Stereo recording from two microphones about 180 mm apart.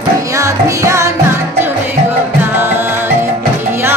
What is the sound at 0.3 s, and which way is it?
Music, 15° right (ahead or behind).